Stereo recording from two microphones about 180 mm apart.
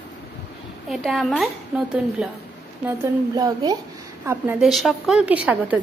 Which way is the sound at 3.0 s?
20° right (ahead or behind).